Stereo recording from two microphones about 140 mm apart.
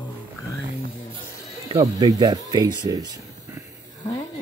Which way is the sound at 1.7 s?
25° right (ahead or behind).